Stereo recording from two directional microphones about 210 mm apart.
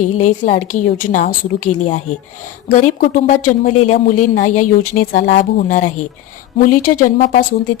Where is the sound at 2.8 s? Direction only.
35° left (ahead or behind).